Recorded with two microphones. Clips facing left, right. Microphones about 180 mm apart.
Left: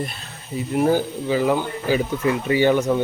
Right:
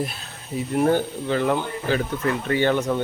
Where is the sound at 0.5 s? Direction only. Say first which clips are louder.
Left 1 dB; 5° left (ahead or behind).